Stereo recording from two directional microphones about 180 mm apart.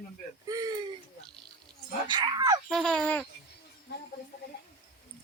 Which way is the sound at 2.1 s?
25° right (ahead or behind).